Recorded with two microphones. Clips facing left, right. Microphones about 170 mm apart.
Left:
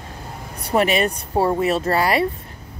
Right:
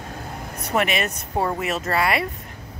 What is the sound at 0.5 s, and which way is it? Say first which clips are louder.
Speech: left 4 dB; 35° left (ahead or behind).